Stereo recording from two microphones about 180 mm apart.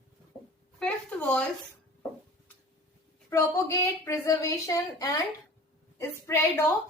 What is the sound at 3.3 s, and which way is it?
A woman's voice, 15° left (ahead or behind).